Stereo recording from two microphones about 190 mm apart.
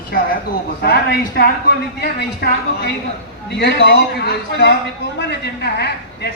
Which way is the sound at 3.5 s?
60° left (ahead or behind).